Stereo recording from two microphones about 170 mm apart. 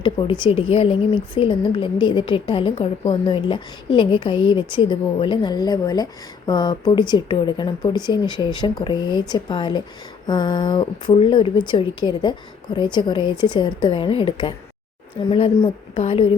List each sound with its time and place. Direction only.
0.0 s a woman's voice: 30° left (ahead or behind)